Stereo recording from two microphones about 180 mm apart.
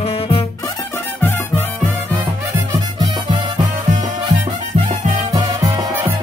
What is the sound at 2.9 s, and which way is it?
Music, 25° right (ahead or behind).